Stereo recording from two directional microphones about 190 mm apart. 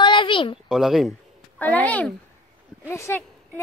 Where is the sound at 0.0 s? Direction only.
25° left (ahead or behind).